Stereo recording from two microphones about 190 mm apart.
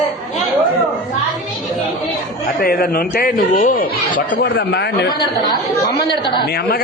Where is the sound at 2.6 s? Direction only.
50° left (ahead or behind).